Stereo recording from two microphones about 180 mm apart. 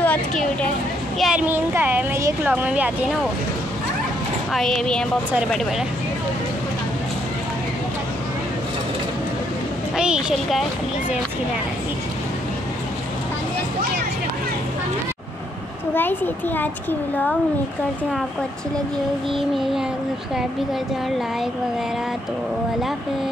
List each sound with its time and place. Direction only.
0.0 s a woman's voice: 10° left (ahead or behind)
1.2 s speech: 10° right (ahead or behind)
4.5 s speech: centre (ahead or behind)
9.9 s speech: 5° right (ahead or behind)
15.9 s a child's voice: 10° left (ahead or behind)
19.5 s speech: centre (ahead or behind)